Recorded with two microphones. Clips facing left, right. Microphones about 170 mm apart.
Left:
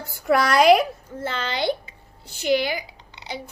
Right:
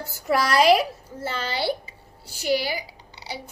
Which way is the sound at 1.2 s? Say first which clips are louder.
Left 1 dB; 10° right (ahead or behind).